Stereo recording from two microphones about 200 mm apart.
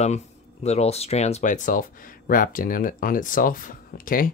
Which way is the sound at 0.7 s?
30° left (ahead or behind).